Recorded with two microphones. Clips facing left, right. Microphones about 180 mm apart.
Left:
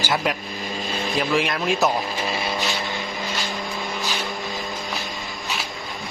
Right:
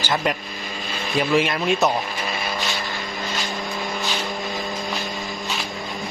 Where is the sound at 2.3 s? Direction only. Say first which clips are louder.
Left 1 dB; 25° left (ahead or behind).